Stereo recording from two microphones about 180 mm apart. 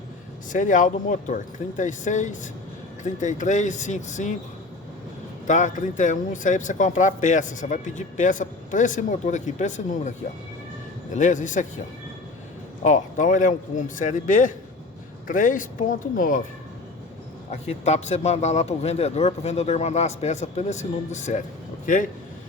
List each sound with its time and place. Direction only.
0.5 s speech: 45° left (ahead or behind)
5.5 s speech: 45° left (ahead or behind)
12.8 s speech: 45° left (ahead or behind)
17.5 s a man's voice: 35° left (ahead or behind)